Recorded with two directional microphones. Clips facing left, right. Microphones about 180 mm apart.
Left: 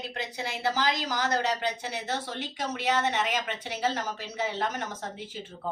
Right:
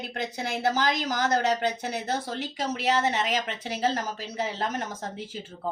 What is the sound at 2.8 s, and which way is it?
Speech, 35° right (ahead or behind).